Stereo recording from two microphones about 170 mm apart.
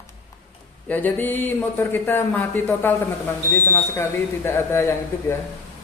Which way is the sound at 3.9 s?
15° left (ahead or behind).